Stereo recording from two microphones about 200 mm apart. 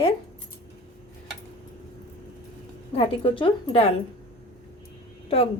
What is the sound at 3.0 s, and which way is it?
Speech, 25° left (ahead or behind).